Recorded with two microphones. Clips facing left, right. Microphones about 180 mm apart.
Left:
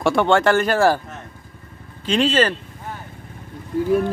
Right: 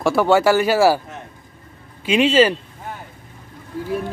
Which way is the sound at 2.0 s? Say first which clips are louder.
Right 3 dB; 10° right (ahead or behind).